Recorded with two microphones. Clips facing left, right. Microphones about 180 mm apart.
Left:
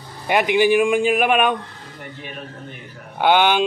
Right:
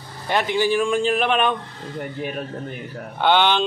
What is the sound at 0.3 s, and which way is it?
A man's voice, 15° left (ahead or behind).